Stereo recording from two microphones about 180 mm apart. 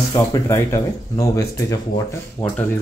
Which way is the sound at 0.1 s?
20° left (ahead or behind).